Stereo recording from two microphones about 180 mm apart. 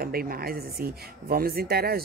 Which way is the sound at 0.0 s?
55° right (ahead or behind).